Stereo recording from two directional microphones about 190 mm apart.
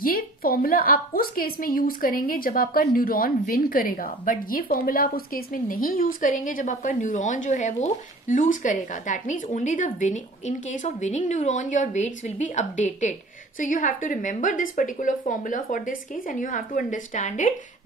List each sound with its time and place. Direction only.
0.0 s a woman's voice: 50° left (ahead or behind)